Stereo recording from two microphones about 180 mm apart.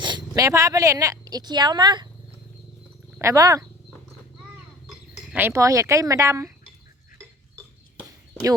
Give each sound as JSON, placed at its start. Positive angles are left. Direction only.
{"t": 0.0, "sound": "speech", "side_deg": -25}
{"t": 3.2, "sound": "speech", "side_deg": -20}
{"t": 5.3, "sound": "speech", "side_deg": -10}